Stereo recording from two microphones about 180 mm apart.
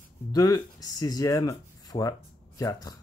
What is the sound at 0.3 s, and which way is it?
Speech, 20° left (ahead or behind).